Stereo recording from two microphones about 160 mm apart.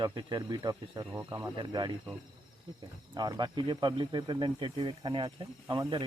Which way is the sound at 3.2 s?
25° right (ahead or behind).